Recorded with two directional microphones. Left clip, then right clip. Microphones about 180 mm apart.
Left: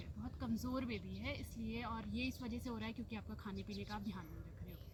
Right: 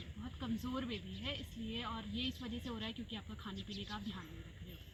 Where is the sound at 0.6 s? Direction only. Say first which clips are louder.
Right 1 dB; 25° left (ahead or behind).